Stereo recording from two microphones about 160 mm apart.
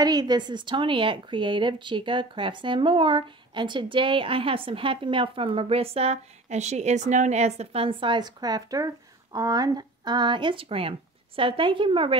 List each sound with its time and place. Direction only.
0.0 s speech: 25° right (ahead or behind)